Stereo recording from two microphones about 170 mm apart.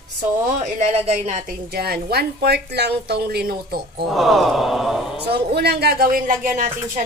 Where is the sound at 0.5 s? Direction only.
40° right (ahead or behind).